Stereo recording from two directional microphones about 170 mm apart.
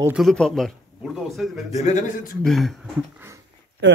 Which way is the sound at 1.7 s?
45° left (ahead or behind).